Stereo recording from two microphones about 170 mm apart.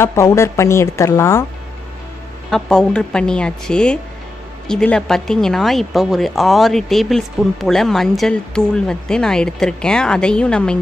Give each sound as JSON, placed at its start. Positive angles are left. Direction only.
{"t": 0.0, "sound": "a woman's voice", "side_deg": 15}
{"t": 2.5, "sound": "a woman's voice", "side_deg": 5}